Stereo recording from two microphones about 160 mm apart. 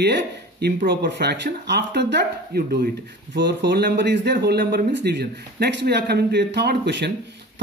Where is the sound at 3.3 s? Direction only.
90° right.